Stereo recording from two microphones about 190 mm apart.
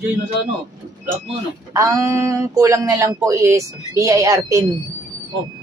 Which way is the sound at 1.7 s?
15° right (ahead or behind).